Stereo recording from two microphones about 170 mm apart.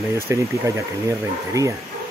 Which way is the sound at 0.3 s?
20° right (ahead or behind).